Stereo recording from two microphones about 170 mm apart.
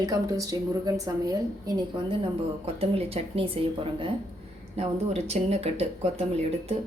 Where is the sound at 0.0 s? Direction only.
20° right (ahead or behind).